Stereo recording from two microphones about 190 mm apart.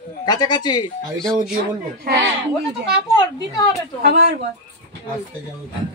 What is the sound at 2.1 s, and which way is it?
Speech, 55° right (ahead or behind).